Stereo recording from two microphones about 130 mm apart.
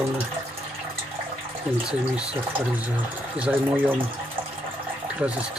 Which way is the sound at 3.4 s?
15° right (ahead or behind).